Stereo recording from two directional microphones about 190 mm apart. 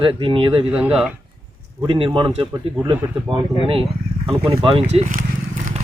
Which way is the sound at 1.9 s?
25° right (ahead or behind).